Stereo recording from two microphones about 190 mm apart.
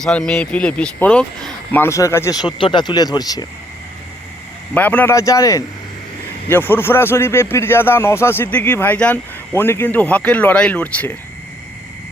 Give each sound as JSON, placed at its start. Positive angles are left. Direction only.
{"t": 0.0, "sound": "a man's voice", "side_deg": 5}
{"t": 4.7, "sound": "a man's voice", "side_deg": 10}